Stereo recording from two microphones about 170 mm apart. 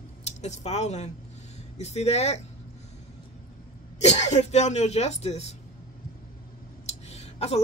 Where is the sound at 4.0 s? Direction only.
40° left (ahead or behind).